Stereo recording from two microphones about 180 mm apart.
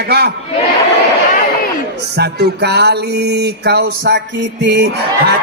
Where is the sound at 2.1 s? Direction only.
65° right (ahead or behind).